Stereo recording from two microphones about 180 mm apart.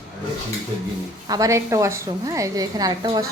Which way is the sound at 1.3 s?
20° right (ahead or behind).